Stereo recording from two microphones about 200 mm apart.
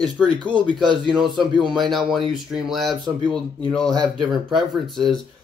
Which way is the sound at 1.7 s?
Centre (ahead or behind).